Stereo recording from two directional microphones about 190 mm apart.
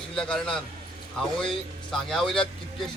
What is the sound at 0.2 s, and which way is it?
A man's voice, 5° left (ahead or behind).